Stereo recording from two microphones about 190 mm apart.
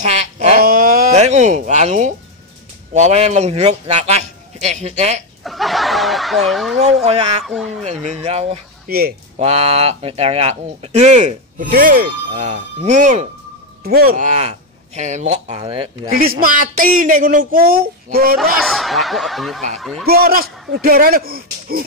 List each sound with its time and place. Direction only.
0.0 s a sound: 35° right (ahead or behind)
0.6 s dog: 50° right (ahead or behind)
1.1 s a man's voice: 35° right (ahead or behind)
5.4 s snicker: centre (ahead or behind)
7.1 s a man's voice: 35° right (ahead or behind)
7.4 s speech: centre (ahead or behind)
7.8 s a man's voice: 40° right (ahead or behind)
8.8 s speech: 55° right (ahead or behind)
9.4 s a man's voice: 30° right (ahead or behind); by 12.0 s 50° right (ahead or behind)
12.4 s a man's voice: 35° right (ahead or behind)
13.8 s a man's voice: 50° right (ahead or behind); by 15.9 s 30° right (ahead or behind)
16.1 s speech: 50° right (ahead or behind)
18.4 s speech: centre (ahead or behind)
20.1 s speech: 50° right (ahead or behind)